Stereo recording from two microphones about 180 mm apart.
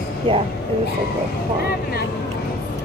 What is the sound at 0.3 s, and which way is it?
Speech, 30° right (ahead or behind).